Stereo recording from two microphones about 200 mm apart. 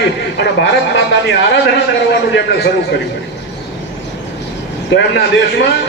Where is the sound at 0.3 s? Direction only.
60° left (ahead or behind).